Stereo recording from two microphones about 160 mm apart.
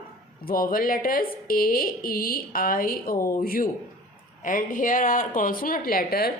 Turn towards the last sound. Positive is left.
turn(degrees=70)  # may be behind; listen again after turning